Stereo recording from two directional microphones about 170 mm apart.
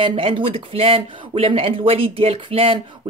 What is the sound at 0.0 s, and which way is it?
Speech, 30° right (ahead or behind).